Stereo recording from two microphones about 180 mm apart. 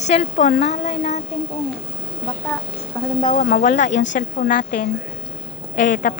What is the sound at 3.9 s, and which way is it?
Speech, 90° left.